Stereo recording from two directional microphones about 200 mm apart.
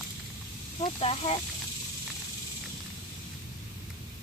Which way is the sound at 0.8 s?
30° left (ahead or behind).